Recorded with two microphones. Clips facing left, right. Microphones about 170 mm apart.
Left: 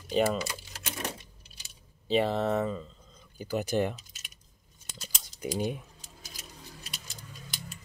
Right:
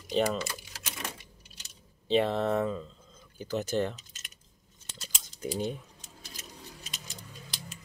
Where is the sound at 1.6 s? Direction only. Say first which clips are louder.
Right 1 dB; 5° left (ahead or behind).